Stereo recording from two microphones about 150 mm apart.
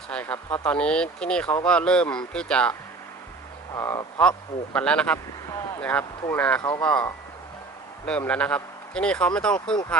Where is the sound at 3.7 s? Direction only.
20° left (ahead or behind).